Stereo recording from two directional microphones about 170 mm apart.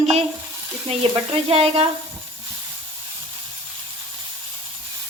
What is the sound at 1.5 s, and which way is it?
Speech, 35° right (ahead or behind).